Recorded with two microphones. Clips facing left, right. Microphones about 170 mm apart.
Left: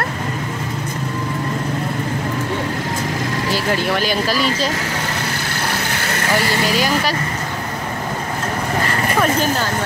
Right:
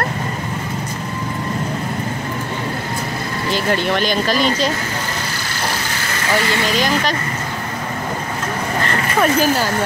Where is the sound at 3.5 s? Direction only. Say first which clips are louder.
Right 2 dB; 5° left (ahead or behind).